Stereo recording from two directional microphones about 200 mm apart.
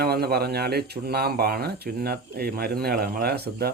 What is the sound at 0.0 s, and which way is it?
Speech, 50° right (ahead or behind).